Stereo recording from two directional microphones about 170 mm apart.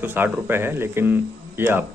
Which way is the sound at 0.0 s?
10° right (ahead or behind).